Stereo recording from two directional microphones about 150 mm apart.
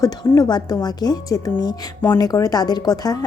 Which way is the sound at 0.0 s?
25° left (ahead or behind).